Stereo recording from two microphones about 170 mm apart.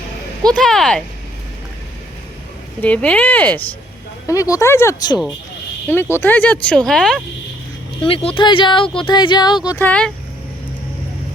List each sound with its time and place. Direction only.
0.5 s speech: centre (ahead or behind)
2.8 s speech: 5° left (ahead or behind)
8.0 s speech: 35° left (ahead or behind)
9.6 s speech: 10° left (ahead or behind)